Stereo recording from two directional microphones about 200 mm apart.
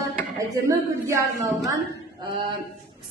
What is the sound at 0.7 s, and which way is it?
A woman's voice, 15° right (ahead or behind).